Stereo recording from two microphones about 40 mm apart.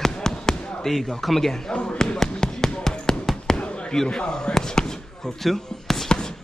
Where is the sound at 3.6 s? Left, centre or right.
Left.